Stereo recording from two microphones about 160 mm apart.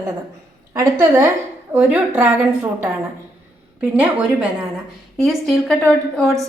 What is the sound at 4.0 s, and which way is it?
A woman's voice, 10° right (ahead or behind).